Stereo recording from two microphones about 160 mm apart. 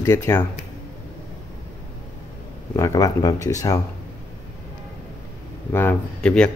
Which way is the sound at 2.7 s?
20° left (ahead or behind).